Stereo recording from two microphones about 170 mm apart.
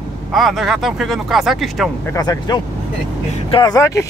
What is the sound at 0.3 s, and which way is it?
Speech, centre (ahead or behind).